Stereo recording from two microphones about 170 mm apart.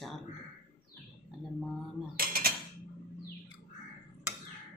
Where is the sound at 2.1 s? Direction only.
60° right (ahead or behind).